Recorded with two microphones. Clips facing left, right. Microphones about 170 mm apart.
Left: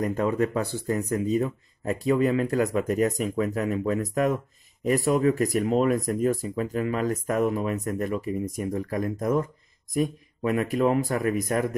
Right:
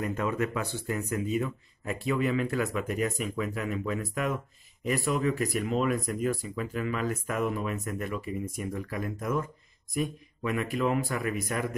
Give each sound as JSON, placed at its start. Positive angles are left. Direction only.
{"t": 0.0, "sound": "speech", "side_deg": 35}